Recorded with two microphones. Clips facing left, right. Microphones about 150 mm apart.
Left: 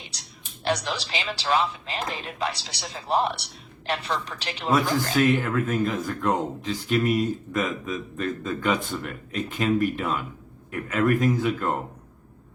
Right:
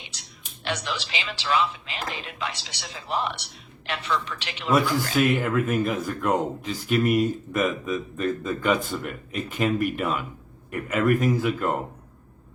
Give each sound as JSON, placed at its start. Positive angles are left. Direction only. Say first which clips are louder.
{"t": 0.0, "sound": "speech", "louder": "left 1 dB", "side_deg": 40}
{"t": 5.2, "sound": "a man's voice", "louder": "even", "side_deg": -10}